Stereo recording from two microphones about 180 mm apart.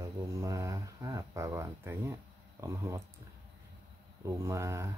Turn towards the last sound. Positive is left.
turn(degrees=-15)  # may be behind; listen again after turning